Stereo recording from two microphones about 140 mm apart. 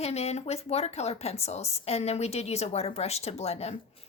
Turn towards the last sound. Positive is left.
turn(degrees=50)  # may be behind; listen again after turning